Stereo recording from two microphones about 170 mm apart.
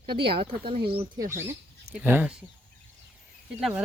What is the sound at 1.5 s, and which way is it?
Speech, 10° right (ahead or behind).